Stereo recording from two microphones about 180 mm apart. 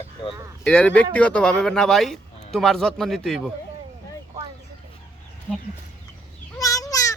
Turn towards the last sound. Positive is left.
turn(degrees=20)  # may be behind; listen again after turning